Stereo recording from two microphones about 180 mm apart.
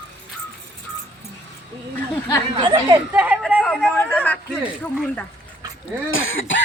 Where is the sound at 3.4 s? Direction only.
Centre (ahead or behind).